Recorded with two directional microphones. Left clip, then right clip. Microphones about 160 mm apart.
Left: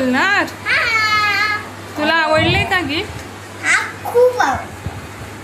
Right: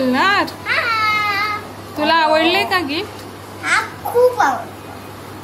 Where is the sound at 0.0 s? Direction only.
Centre (ahead or behind).